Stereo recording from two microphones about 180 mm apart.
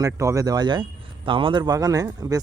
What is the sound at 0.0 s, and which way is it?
Speech, 15° right (ahead or behind).